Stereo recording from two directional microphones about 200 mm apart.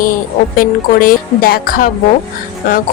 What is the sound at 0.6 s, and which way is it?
Speech, 45° left (ahead or behind).